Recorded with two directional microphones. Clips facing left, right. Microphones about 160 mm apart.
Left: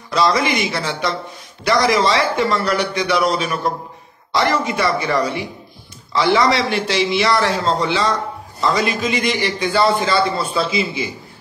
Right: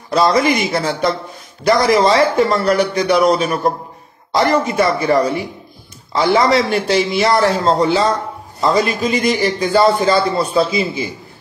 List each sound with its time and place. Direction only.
0.1 s a man's voice: 45° right (ahead or behind)